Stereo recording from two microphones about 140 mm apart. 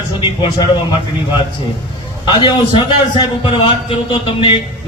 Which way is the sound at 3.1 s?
40° left (ahead or behind).